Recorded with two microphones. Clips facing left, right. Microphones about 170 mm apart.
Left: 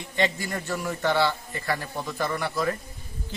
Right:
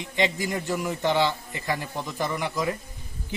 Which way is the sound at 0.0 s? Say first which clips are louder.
Right 1 dB; 15° right (ahead or behind).